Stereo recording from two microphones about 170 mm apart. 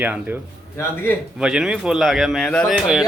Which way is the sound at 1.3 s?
5° right (ahead or behind).